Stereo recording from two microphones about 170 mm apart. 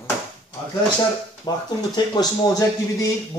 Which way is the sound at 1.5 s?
25° left (ahead or behind).